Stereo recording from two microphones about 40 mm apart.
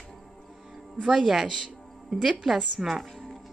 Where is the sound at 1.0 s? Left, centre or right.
Right.